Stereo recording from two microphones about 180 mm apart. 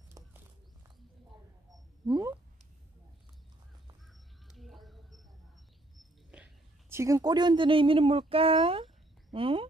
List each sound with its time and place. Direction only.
2.0 s speech: 20° right (ahead or behind)
4.5 s bird: centre (ahead or behind)
5.9 s a sound: 5° right (ahead or behind); by 9.7 s 30° right (ahead or behind)